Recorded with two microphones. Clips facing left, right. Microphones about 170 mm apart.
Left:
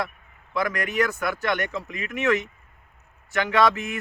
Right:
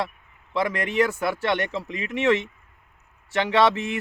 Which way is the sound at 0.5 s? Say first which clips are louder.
Right 2 dB; 25° right (ahead or behind).